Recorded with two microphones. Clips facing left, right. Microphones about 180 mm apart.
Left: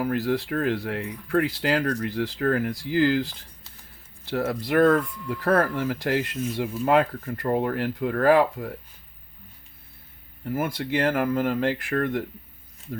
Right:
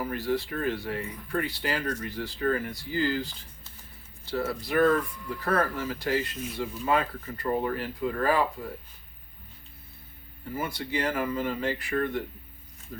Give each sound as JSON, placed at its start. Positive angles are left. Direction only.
{"t": 0.0, "sound": "speech", "side_deg": 70}
{"t": 4.4, "sound": "speech", "side_deg": 65}
{"t": 10.5, "sound": "speech", "side_deg": 55}